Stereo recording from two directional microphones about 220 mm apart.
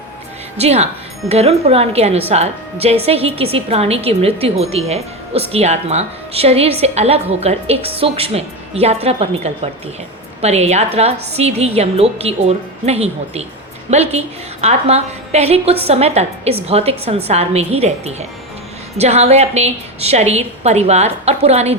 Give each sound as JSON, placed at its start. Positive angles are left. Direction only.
{"t": 0.5, "sound": "a woman's voice", "side_deg": -30}